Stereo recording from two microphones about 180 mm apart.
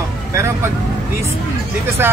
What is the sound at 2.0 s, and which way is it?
Speech, 10° right (ahead or behind).